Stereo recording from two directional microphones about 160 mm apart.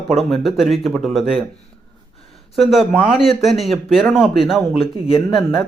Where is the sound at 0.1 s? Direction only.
Centre (ahead or behind).